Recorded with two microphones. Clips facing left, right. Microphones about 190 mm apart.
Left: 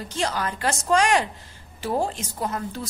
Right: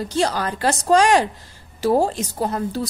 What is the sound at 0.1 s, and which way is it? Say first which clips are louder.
A woman's voice: right 4 dB; 35° right (ahead or behind).